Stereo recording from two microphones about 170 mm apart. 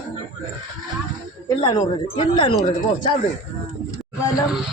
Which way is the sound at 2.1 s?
35° left (ahead or behind).